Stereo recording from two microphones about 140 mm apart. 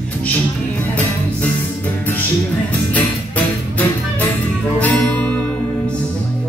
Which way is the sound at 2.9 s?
10° left (ahead or behind).